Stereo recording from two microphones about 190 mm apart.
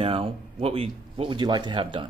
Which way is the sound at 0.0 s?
30° right (ahead or behind).